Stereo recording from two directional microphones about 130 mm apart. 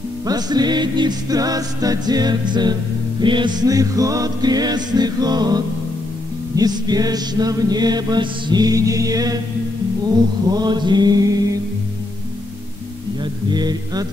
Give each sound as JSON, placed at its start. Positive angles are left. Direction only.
{"t": 0.3, "sound": "music", "side_deg": -30}
{"t": 6.5, "sound": "mantra", "side_deg": -30}
{"t": 10.0, "sound": "music", "side_deg": -30}
{"t": 13.2, "sound": "a sound", "side_deg": -35}